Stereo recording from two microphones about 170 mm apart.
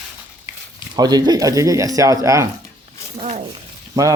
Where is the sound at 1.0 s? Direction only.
25° right (ahead or behind).